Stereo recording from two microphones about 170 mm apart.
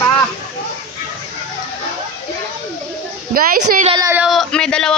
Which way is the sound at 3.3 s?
60° right (ahead or behind).